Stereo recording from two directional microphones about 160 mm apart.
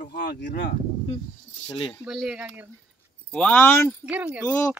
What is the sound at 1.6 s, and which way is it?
Speech, 35° left (ahead or behind).